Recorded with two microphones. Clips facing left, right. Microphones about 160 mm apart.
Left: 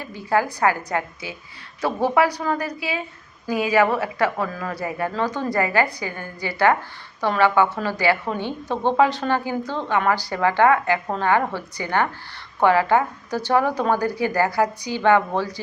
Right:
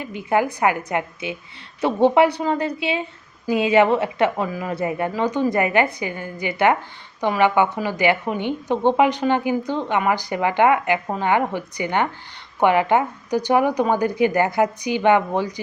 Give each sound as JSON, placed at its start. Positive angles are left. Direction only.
{"t": 0.0, "sound": "a woman's voice", "side_deg": -20}